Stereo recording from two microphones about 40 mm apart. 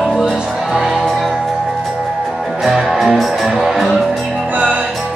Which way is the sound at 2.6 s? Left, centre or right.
Centre.